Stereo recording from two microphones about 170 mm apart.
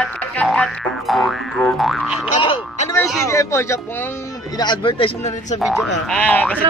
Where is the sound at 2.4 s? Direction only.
30° left (ahead or behind).